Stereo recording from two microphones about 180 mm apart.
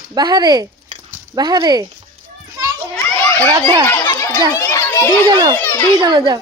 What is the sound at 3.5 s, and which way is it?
Speech, 25° right (ahead or behind).